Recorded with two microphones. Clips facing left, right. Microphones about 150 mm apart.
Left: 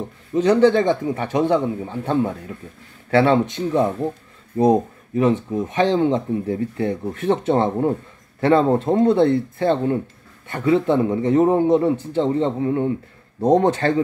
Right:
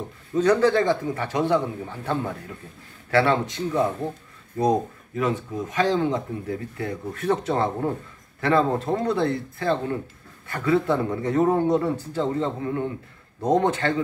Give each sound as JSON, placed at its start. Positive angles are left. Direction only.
{"t": 0.3, "sound": "a man's voice", "side_deg": 20}